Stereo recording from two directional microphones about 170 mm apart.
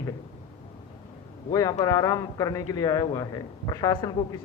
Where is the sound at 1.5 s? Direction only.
20° left (ahead or behind).